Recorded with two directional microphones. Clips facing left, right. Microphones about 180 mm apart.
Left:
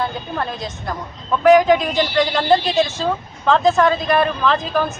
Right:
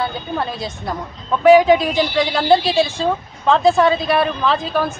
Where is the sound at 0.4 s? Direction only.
5° right (ahead or behind).